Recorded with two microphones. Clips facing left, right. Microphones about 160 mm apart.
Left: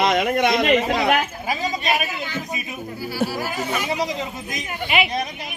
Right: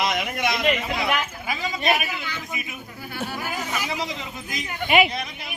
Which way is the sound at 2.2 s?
45° left (ahead or behind).